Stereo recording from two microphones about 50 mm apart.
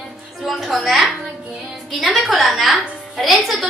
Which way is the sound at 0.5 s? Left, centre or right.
Centre.